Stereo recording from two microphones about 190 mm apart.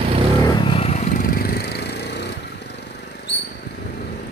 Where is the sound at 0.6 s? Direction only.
30° left (ahead or behind); by 2.2 s 60° left (ahead or behind).